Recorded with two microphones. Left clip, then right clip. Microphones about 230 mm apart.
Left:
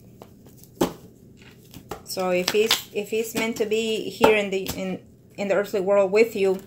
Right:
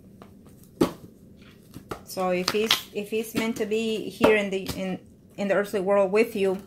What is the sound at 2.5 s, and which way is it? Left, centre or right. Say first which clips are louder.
Speech: left 7 dB; centre.